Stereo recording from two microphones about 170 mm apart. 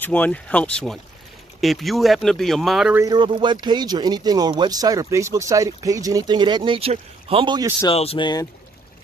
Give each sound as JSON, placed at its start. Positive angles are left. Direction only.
{"t": 0.0, "sound": "speech", "side_deg": 10}
{"t": 3.1, "sound": "speech", "side_deg": -30}
{"t": 7.9, "sound": "speech", "side_deg": 35}